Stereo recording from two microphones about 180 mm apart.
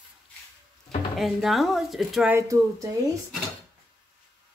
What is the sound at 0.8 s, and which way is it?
Speech, centre (ahead or behind).